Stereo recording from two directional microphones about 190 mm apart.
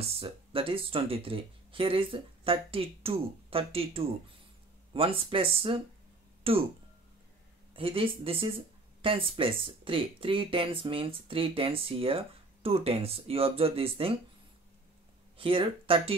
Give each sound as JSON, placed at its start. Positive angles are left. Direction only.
{"t": 0.0, "sound": "speech", "side_deg": -30}
{"t": 7.7, "sound": "speech", "side_deg": -30}
{"t": 15.3, "sound": "speech", "side_deg": -30}